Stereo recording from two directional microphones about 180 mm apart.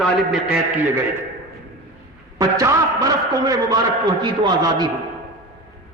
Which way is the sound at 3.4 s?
20° right (ahead or behind).